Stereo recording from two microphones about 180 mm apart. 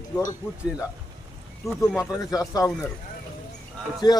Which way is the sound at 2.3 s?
20° left (ahead or behind).